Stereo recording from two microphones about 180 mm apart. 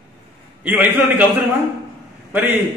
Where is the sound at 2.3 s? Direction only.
10° right (ahead or behind).